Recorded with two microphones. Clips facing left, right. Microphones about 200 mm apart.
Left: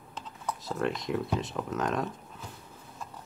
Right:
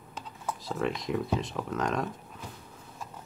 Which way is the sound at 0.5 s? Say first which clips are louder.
Even; centre (ahead or behind).